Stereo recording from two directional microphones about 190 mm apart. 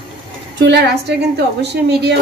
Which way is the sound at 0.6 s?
65° right (ahead or behind).